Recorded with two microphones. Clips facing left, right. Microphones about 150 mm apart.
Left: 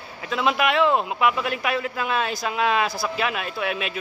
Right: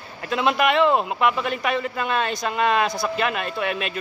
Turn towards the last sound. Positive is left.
turn(degrees=0)  # may be behind; listen again after turning